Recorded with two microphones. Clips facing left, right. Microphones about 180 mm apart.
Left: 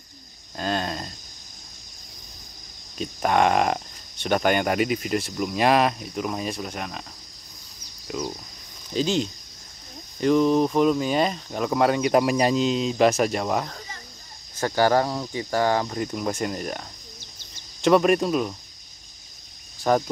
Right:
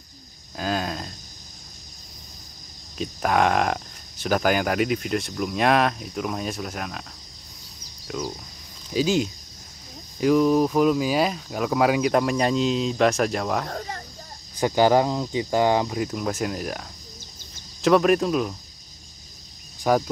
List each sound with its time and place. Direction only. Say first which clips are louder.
0.6 s speech: even; 5° right (ahead or behind)
3.0 s speech: left 1 dB; centre (ahead or behind)
8.1 s speech: even; 5° left (ahead or behind)
8.9 s speech: right 2 dB; 10° right (ahead or behind)
13.7 s a sound: right 8 dB; 55° right (ahead or behind)
14.6 s speech: right 2 dB; 15° right (ahead or behind)
16.0 s speech: right 1 dB; centre (ahead or behind)
17.8 s speech: even; centre (ahead or behind)
19.9 s speech: even; 5° right (ahead or behind)